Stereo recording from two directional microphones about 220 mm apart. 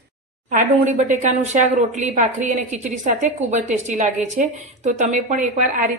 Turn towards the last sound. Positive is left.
turn(degrees=-35)  # may be behind; listen again after turning